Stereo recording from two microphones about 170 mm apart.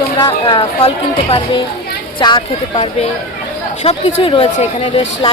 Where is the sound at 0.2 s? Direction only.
30° left (ahead or behind).